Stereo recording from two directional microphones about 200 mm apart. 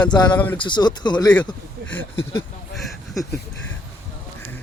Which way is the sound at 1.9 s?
10° left (ahead or behind).